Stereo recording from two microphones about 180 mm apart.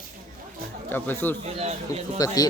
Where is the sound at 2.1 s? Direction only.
20° left (ahead or behind).